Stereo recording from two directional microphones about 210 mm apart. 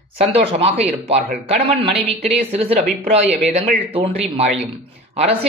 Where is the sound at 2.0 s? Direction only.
30° right (ahead or behind).